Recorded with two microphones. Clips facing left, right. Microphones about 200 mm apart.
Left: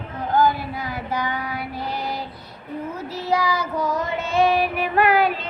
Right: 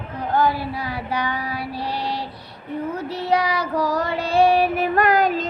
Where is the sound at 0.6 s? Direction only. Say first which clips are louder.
Right 2 dB; 30° right (ahead or behind).